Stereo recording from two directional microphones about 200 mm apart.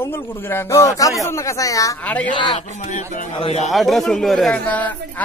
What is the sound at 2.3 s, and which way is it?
Speech, 25° left (ahead or behind).